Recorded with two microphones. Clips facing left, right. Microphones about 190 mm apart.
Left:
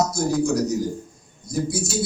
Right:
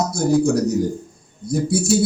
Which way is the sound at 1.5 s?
60° right (ahead or behind).